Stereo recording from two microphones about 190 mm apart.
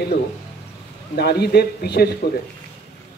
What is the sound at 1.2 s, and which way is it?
Speech, 60° left (ahead or behind).